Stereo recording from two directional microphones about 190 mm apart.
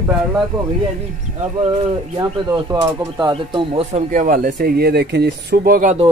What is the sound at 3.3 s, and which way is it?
Speech, 30° right (ahead or behind).